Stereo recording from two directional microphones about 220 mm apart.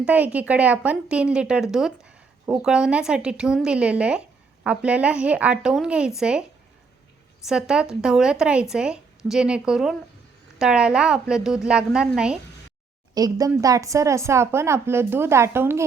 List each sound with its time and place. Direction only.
0.0 s speech: 5° right (ahead or behind)
7.4 s speech: 5° right (ahead or behind)
13.1 s a woman's voice: 15° right (ahead or behind)